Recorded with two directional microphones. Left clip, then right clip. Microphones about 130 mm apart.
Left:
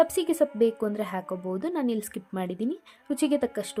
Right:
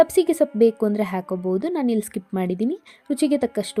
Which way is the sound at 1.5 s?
35° right (ahead or behind).